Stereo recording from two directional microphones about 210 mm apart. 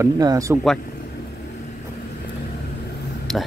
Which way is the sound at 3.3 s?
Centre (ahead or behind).